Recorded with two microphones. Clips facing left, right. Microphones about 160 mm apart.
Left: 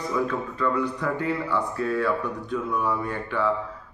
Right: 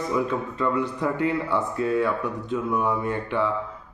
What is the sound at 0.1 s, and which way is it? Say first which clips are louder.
Speech: even; 20° right (ahead or behind).